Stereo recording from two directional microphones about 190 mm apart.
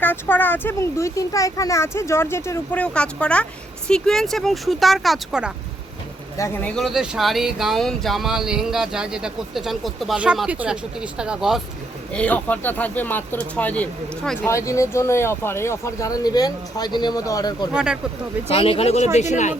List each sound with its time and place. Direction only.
0.0 s speech: 10° left (ahead or behind)
6.3 s speech: 15° left (ahead or behind)
17.7 s speech: 5° right (ahead or behind)
18.4 s speech: 30° left (ahead or behind)